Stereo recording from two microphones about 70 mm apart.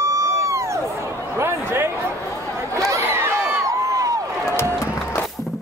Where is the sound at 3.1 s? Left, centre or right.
Right.